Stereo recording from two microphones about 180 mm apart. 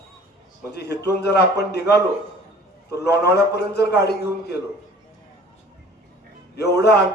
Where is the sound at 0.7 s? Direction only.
65° left (ahead or behind).